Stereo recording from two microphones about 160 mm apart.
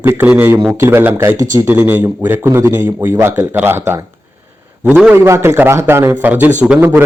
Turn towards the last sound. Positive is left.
turn(degrees=-5)  # may be behind; listen again after turning